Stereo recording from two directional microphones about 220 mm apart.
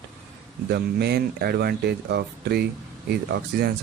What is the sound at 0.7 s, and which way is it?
Speech, 45° right (ahead or behind).